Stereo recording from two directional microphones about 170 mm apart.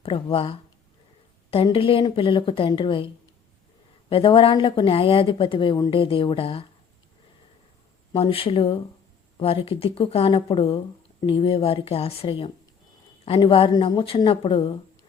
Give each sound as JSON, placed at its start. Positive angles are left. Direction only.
{"t": 0.0, "sound": "speech", "side_deg": 30}
{"t": 4.1, "sound": "speech", "side_deg": 30}
{"t": 8.1, "sound": "speech", "side_deg": 35}